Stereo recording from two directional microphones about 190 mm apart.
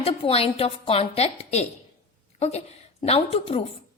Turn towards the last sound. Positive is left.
turn(degrees=30)  # may be behind; listen again after turning